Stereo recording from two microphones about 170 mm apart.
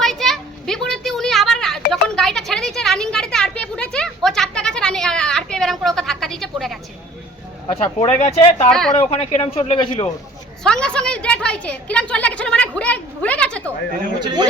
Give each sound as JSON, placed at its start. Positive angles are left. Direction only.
{"t": 0.0, "sound": "a sound", "side_deg": 0}
{"t": 7.8, "sound": "speech", "side_deg": 35}
{"t": 8.7, "sound": "speech", "side_deg": 5}
{"t": 9.0, "sound": "speech", "side_deg": 35}
{"t": 10.6, "sound": "a sound", "side_deg": 5}
{"t": 14.2, "sound": "speech", "side_deg": -25}